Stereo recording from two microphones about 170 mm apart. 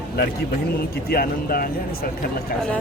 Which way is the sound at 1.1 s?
60° left (ahead or behind).